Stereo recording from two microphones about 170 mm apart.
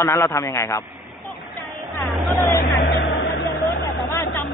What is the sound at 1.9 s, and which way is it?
Vehicle, 5° left (ahead or behind).